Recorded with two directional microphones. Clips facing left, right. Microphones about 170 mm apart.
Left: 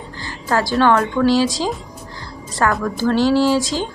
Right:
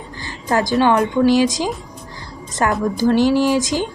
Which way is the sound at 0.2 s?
20° right (ahead or behind).